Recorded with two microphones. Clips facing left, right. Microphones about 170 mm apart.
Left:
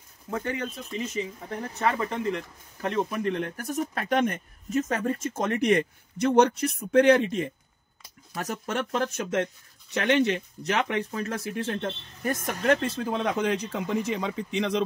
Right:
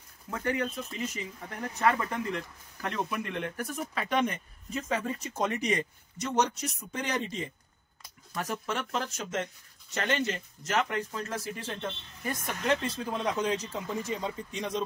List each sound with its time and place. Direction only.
0.3 s speech: 25° left (ahead or behind); by 7.5 s 60° left (ahead or behind)
8.4 s speech: 45° left (ahead or behind); by 14.8 s 85° left